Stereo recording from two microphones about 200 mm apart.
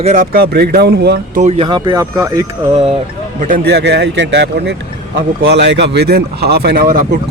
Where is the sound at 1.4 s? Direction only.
35° right (ahead or behind); by 2.5 s 15° right (ahead or behind).